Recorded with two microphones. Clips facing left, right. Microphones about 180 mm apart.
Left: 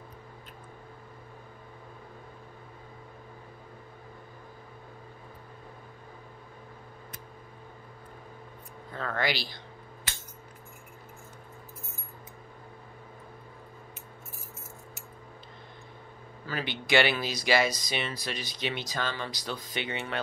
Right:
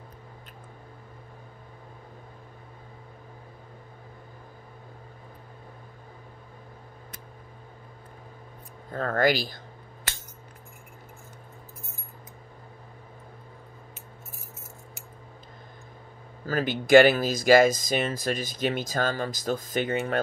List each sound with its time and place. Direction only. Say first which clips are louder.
8.9 s speech: right 7 dB; 45° right (ahead or behind)
16.4 s speech: right 8 dB; 45° right (ahead or behind)